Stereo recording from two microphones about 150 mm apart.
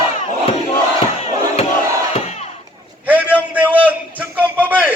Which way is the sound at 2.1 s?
45° left (ahead or behind).